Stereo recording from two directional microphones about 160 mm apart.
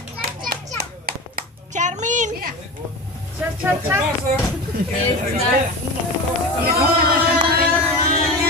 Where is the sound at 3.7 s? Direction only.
15° right (ahead or behind).